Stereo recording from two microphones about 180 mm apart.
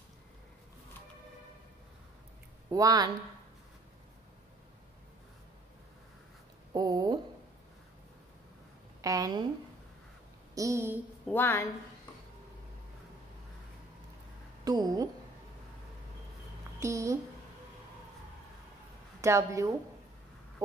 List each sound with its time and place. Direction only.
2.7 s speech: 20° right (ahead or behind)
6.7 s speech: 20° right (ahead or behind)
9.0 s speech: 20° right (ahead or behind)
10.5 s a woman's voice: 15° right (ahead or behind)
11.2 s a woman's voice: 10° left (ahead or behind)
14.6 s a woman's voice: 20° right (ahead or behind)
16.8 s a woman's voice: 15° right (ahead or behind)
19.2 s a woman's voice: 15° right (ahead or behind)